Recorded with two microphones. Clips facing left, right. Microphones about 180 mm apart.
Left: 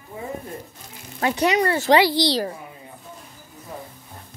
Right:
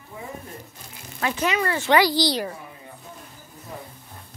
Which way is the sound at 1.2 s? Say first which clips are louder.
Left 4 dB; 35° left (ahead or behind).